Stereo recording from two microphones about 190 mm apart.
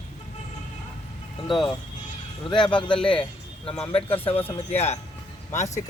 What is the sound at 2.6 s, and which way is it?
Speech, 25° left (ahead or behind).